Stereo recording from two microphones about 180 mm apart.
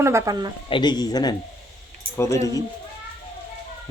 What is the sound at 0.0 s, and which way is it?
Speech, 15° right (ahead or behind).